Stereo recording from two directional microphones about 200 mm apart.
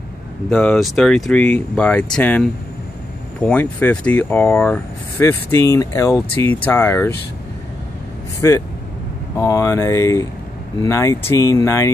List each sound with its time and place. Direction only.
0.5 s speech: 5° left (ahead or behind)
8.4 s speech: 15° left (ahead or behind)